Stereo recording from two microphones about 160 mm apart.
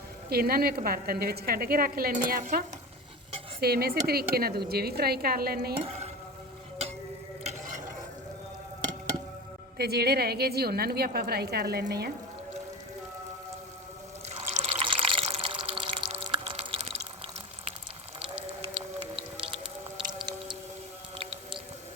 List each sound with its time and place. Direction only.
0.3 s a woman's voice: 75° right (ahead or behind)
3.6 s a woman's voice: 75° right (ahead or behind)
5.8 s stir: 40° right (ahead or behind)
9.7 s a woman's voice: 80° right
14.3 s water: 45° right (ahead or behind)
18.2 s whale vocalization: 35° right (ahead or behind)